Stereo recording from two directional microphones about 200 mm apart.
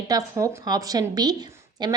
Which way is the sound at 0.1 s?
15° right (ahead or behind).